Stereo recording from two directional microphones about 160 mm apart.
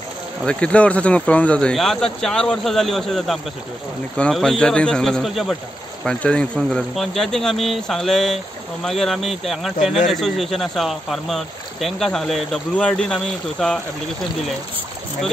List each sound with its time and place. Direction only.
0.5 s speech: 5° left (ahead or behind)